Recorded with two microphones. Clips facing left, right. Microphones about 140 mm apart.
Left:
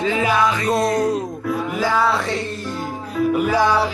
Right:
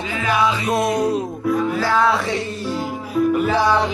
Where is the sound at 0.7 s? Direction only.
Centre (ahead or behind).